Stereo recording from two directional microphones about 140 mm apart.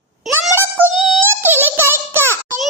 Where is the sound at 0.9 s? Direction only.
Centre (ahead or behind).